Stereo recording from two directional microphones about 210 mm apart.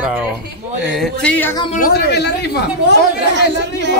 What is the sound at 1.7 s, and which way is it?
Speech, 45° left (ahead or behind).